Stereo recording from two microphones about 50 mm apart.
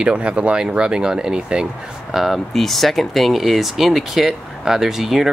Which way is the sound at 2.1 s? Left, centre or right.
Centre.